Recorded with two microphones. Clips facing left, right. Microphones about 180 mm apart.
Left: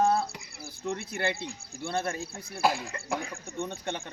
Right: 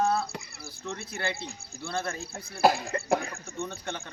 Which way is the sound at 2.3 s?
40° right (ahead or behind).